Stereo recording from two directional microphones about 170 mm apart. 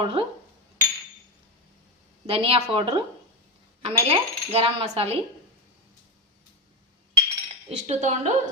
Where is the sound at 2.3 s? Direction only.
35° right (ahead or behind).